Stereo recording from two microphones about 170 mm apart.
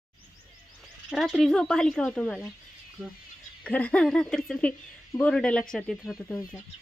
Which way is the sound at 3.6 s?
10° left (ahead or behind).